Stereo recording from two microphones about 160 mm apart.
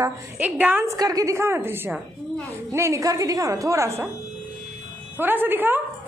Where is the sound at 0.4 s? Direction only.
10° right (ahead or behind).